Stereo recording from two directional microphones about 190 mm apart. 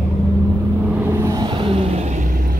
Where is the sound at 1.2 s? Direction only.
20° right (ahead or behind).